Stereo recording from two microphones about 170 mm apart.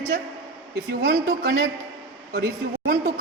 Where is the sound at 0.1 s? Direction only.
65° right (ahead or behind).